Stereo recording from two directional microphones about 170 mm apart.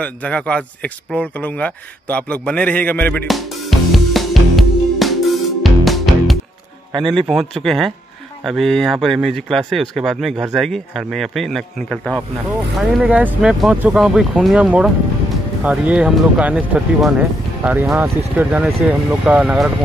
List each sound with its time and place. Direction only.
0.0 s speech: 5° left (ahead or behind)
3.9 s music: centre (ahead or behind)
6.9 s speech: 25° right (ahead or behind)
7.2 s speech: centre (ahead or behind)
13.0 s speech: 10° right (ahead or behind)